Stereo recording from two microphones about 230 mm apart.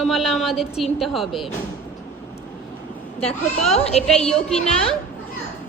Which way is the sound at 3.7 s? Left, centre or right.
Left.